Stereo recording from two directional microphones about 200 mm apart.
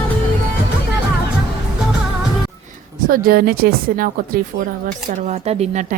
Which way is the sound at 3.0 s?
45° right (ahead or behind).